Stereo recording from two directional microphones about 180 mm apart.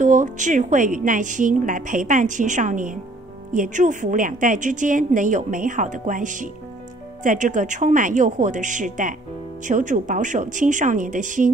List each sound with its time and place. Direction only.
0.0 s a woman's voice: 45° right (ahead or behind)